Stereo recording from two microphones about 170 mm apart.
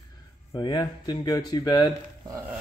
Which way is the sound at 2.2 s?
15° right (ahead or behind).